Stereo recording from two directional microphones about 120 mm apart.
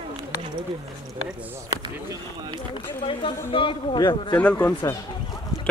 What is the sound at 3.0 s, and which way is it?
A man's voice, 50° left (ahead or behind).